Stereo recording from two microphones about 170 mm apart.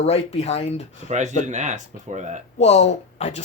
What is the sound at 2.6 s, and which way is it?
Speech, 40° left (ahead or behind).